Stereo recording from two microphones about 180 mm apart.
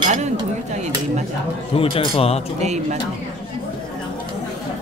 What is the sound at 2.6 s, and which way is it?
Speech, 40° right (ahead or behind).